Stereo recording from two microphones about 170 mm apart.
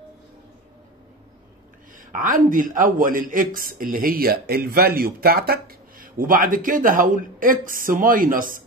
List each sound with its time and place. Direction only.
2.0 s a man's voice: 55° right (ahead or behind)